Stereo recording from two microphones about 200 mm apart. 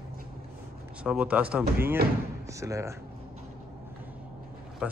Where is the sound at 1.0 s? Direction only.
5° right (ahead or behind).